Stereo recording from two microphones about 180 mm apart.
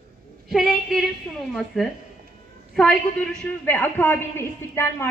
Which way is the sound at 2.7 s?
5° left (ahead or behind).